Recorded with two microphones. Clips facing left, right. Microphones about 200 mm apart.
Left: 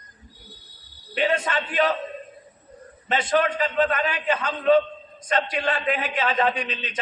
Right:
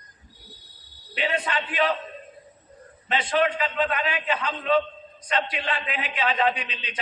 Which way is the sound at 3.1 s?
45° left (ahead or behind).